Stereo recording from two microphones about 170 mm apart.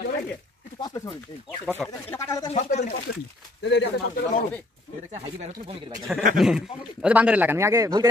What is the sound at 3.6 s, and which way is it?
Speech, 90° left.